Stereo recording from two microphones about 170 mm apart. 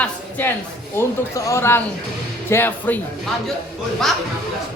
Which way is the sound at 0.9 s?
15° left (ahead or behind).